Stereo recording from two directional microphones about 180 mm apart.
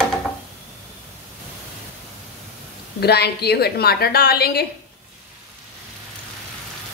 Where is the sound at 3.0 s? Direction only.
65° left (ahead or behind).